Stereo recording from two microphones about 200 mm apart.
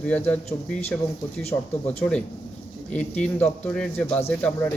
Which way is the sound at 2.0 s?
5° left (ahead or behind).